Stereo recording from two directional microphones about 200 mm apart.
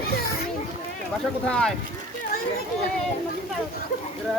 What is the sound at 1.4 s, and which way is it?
Speech, 5° left (ahead or behind).